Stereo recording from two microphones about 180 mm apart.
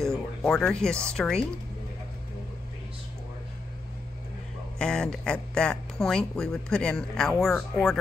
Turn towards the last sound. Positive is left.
turn(degrees=0)  # may be behind; listen again after turning